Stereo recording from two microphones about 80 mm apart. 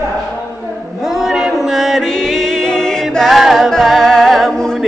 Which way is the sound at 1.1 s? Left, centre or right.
Centre.